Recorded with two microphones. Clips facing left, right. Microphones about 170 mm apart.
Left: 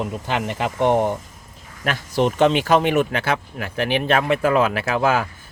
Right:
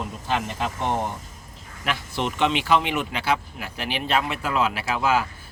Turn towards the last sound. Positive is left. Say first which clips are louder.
# left 4 dB
turn(degrees=55)  # may be behind; listen again after turning